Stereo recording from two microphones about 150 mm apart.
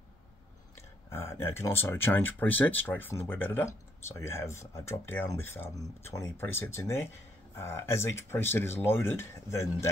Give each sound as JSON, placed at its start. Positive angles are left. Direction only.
{"t": 1.1, "sound": "speech", "side_deg": 15}